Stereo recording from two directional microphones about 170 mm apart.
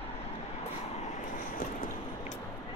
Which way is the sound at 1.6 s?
50° left (ahead or behind).